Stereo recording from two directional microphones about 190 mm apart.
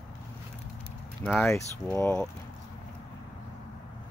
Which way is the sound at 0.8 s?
5° left (ahead or behind).